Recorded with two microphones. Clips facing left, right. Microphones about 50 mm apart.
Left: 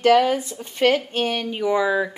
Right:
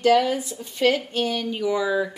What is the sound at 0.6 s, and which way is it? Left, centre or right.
A woman's voice, left.